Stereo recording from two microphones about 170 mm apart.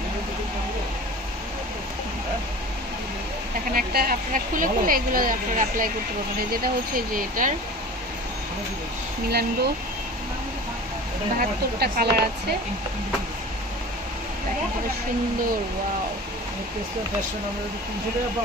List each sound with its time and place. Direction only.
3.7 s speech: 60° right (ahead or behind)
7.2 s speech: 50° right (ahead or behind)
9.3 s speech: 70° right (ahead or behind)
11.3 s speech: 65° right (ahead or behind)